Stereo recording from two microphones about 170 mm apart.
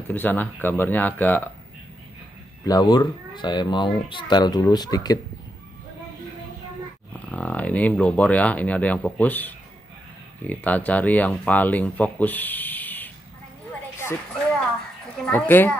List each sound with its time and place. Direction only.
0.1 s speech: 10° left (ahead or behind)
2.6 s speech: 25° left (ahead or behind)
7.2 s speech: 10° left (ahead or behind)
15.2 s speech: 10° left (ahead or behind)